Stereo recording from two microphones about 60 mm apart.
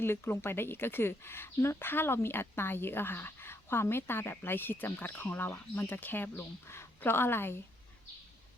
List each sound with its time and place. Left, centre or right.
0.0 s speech: left